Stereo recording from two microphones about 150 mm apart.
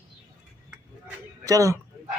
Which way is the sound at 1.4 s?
20° right (ahead or behind).